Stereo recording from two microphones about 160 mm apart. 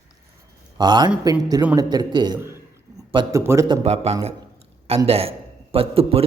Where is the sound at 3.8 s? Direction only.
40° right (ahead or behind).